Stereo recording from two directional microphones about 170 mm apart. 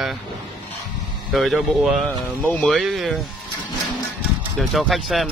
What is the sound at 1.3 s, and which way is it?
Speech, centre (ahead or behind).